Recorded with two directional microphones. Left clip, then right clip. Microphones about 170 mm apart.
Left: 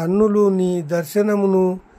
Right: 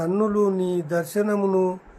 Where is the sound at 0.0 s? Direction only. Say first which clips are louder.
Left 5 dB; 45° left (ahead or behind).